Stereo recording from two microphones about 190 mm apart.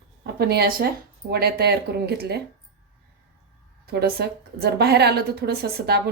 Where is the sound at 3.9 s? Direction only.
60° right (ahead or behind).